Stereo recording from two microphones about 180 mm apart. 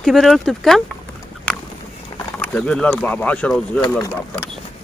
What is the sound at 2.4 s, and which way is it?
Speech, 5° left (ahead or behind).